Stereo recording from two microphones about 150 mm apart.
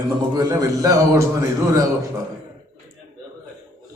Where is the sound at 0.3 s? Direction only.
25° right (ahead or behind).